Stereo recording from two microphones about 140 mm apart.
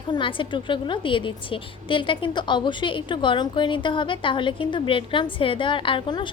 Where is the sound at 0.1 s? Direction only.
35° left (ahead or behind).